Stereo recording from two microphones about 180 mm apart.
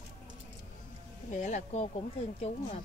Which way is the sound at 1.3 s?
40° left (ahead or behind).